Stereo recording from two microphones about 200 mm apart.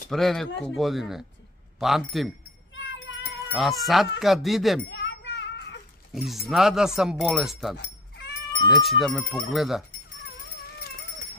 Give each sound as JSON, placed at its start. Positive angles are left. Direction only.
{"t": 0.1, "sound": "speech", "side_deg": 0}
{"t": 2.7, "sound": "cat", "side_deg": 65}
{"t": 3.5, "sound": "speech", "side_deg": 0}
{"t": 4.8, "sound": "children playing", "side_deg": 60}
{"t": 6.1, "sound": "speech", "side_deg": 0}
{"t": 8.7, "sound": "speech", "side_deg": 0}